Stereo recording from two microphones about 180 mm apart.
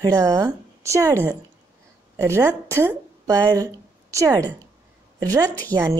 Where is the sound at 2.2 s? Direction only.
15° right (ahead or behind).